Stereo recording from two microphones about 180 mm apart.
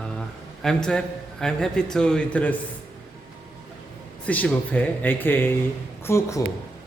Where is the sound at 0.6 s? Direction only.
5° left (ahead or behind).